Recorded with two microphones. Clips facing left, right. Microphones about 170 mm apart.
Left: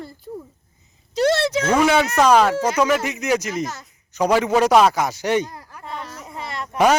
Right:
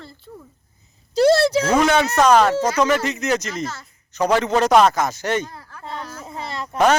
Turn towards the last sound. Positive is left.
turn(degrees=-25)  # may be behind; listen again after turning